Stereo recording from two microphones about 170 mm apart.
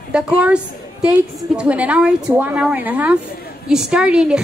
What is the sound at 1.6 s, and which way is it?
A woman's voice, 5° right (ahead or behind).